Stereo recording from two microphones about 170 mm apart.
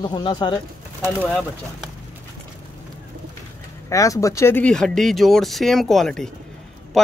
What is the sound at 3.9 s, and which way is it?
Speech, 20° left (ahead or behind).